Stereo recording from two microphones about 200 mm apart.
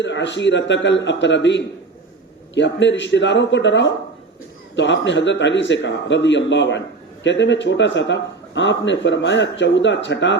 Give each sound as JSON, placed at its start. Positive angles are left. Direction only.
{"t": 0.0, "sound": "speech", "side_deg": 65}